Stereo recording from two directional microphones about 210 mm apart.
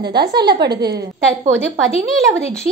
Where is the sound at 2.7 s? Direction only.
40° right (ahead or behind).